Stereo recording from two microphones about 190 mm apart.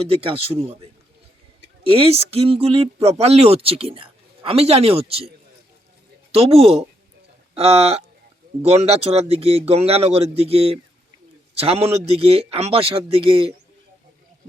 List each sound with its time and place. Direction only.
0.0 s speech: 30° right (ahead or behind)
6.3 s speech: 30° right (ahead or behind)